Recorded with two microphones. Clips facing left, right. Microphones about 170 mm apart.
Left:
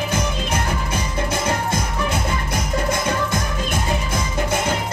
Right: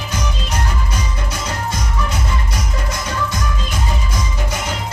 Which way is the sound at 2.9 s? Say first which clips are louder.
Left 2 dB; 55° left (ahead or behind).